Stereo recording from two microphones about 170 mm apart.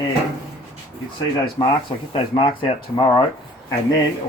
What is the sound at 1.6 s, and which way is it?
Speech, 25° left (ahead or behind).